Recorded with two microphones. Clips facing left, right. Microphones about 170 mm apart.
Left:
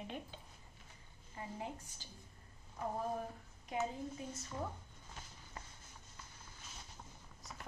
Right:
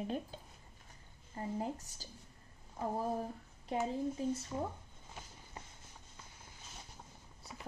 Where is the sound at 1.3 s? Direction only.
40° right (ahead or behind).